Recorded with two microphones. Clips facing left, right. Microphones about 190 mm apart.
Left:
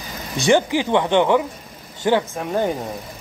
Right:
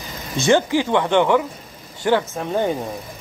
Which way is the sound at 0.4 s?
15° left (ahead or behind).